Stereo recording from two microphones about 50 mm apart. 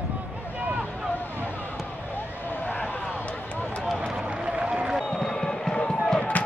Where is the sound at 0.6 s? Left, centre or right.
Right.